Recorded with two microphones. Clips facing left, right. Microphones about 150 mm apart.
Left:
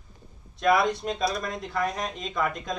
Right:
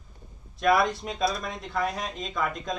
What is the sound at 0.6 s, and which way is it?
Speech, centre (ahead or behind).